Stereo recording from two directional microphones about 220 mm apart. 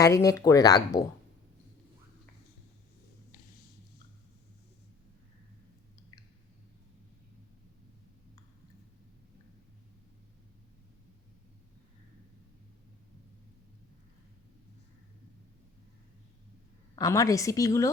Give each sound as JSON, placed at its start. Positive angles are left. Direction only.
{"t": 0.0, "sound": "speech", "side_deg": 15}
{"t": 16.9, "sound": "speech", "side_deg": 15}